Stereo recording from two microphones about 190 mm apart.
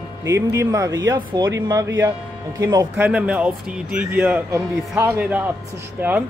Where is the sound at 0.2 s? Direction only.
15° right (ahead or behind).